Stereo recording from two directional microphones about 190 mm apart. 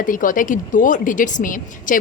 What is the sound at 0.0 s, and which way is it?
A woman's voice, 45° left (ahead or behind).